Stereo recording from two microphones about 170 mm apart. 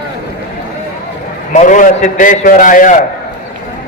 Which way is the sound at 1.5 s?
50° left (ahead or behind).